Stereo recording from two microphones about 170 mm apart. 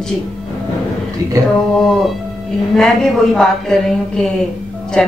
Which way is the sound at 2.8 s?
5° left (ahead or behind).